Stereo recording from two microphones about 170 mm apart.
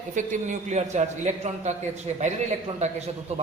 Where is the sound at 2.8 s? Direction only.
40° right (ahead or behind).